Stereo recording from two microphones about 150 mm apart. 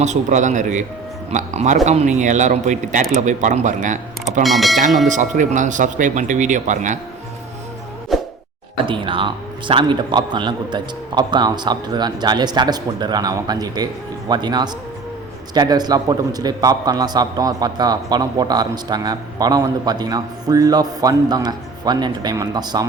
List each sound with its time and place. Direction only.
0.0 s a man's voice: 50° right (ahead or behind)
4.4 s speech: centre (ahead or behind)
5.0 s speech: 55° right (ahead or behind)
8.1 s a sound: centre (ahead or behind)
8.8 s a man's voice: 35° right (ahead or behind)